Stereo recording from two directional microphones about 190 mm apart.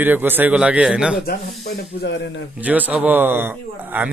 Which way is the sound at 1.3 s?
55° left (ahead or behind).